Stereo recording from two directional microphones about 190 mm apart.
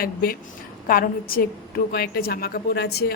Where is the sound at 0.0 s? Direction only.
50° left (ahead or behind).